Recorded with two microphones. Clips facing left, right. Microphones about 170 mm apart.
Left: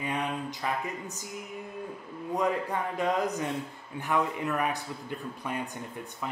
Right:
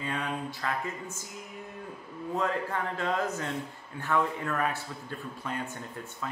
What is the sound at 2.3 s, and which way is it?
A man's voice, 15° left (ahead or behind).